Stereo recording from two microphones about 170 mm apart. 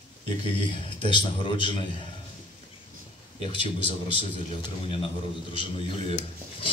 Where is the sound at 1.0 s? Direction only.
30° left (ahead or behind).